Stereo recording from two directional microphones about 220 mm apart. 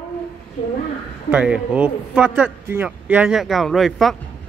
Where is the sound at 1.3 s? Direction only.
5° right (ahead or behind).